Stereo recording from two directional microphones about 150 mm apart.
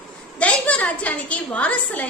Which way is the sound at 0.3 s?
10° left (ahead or behind).